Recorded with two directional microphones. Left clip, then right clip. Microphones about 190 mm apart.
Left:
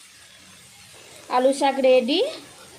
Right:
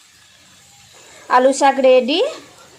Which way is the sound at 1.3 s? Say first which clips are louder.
Right 7 dB; 15° right (ahead or behind).